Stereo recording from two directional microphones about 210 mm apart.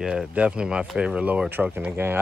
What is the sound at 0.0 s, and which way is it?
Speech, 5° right (ahead or behind).